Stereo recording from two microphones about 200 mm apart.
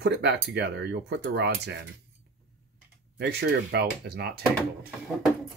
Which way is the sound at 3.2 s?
55° right (ahead or behind).